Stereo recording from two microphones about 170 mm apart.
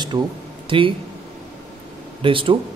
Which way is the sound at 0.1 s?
30° right (ahead or behind).